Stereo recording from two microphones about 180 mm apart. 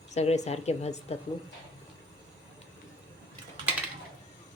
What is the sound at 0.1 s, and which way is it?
Speech, 40° left (ahead or behind).